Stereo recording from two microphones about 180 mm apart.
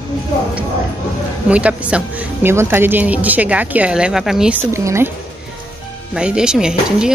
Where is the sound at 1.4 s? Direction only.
5° right (ahead or behind).